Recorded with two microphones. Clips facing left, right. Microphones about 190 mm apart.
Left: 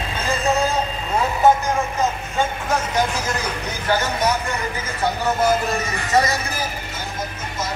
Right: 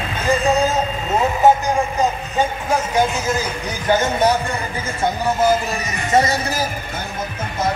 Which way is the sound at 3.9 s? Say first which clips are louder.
Right 4 dB; 25° right (ahead or behind).